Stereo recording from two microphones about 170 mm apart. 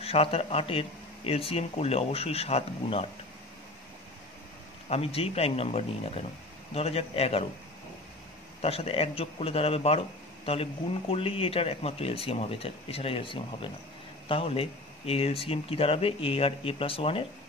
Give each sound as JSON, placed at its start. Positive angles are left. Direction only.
{"t": 0.0, "sound": "a man's voice", "side_deg": 35}
{"t": 4.8, "sound": "a man's voice", "side_deg": 35}
{"t": 8.5, "sound": "a man's voice", "side_deg": 35}